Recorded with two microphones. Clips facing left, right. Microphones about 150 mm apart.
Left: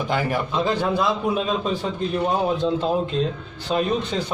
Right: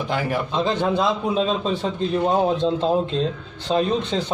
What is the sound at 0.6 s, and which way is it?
Speech, 25° right (ahead or behind).